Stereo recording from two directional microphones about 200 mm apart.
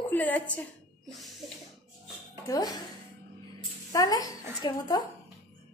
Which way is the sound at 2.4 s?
20° left (ahead or behind).